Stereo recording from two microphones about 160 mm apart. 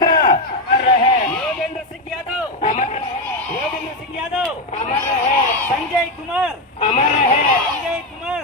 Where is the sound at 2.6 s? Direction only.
55° left (ahead or behind).